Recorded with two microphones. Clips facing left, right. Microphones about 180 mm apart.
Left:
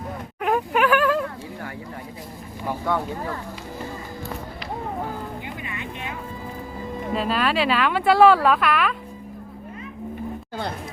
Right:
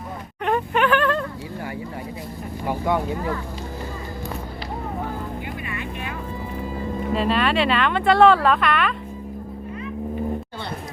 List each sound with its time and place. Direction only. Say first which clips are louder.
0.4 s a sound: even; 5° left (ahead or behind)
2.6 s speech: right 2 dB; 15° right (ahead or behind)
5.6 s vehicle: right 2 dB; 20° left (ahead or behind)
7.1 s speech: right 2 dB; centre (ahead or behind)